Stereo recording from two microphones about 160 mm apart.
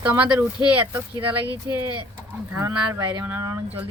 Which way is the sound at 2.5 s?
20° right (ahead or behind).